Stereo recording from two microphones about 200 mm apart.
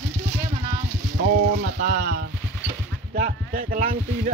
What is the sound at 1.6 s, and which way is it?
Speech, 40° right (ahead or behind).